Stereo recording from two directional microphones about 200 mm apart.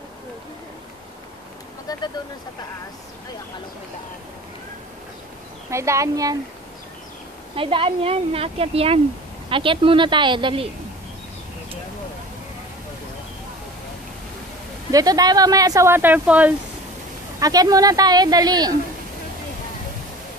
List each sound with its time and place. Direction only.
1.9 s speech: 20° left (ahead or behind)
5.7 s speech: 15° right (ahead or behind)
7.5 s speech: 25° right (ahead or behind)
14.9 s speech: 20° right (ahead or behind)
17.4 s speech: 20° right (ahead or behind)